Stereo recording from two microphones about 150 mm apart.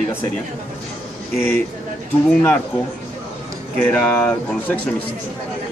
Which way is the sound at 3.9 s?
10° left (ahead or behind).